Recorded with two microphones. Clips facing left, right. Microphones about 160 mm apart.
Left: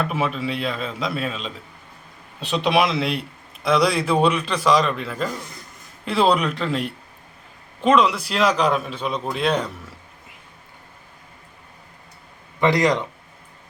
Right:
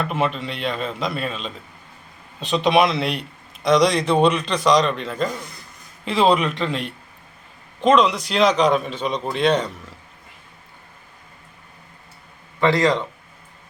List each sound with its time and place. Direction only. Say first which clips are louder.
0.0 s a man's voice: right 1 dB; 5° left (ahead or behind)
12.5 s a man's voice: right 1 dB; 15° left (ahead or behind)